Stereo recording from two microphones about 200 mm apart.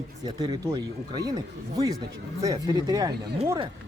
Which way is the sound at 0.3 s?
20° right (ahead or behind).